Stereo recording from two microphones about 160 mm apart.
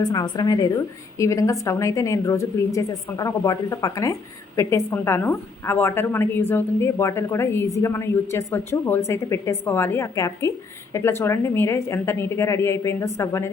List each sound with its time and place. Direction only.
0.0 s a woman's voice: 25° left (ahead or behind)